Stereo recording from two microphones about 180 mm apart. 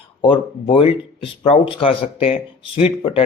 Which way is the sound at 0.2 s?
30° left (ahead or behind).